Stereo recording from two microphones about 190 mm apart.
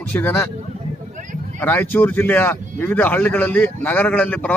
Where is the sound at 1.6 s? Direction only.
10° left (ahead or behind).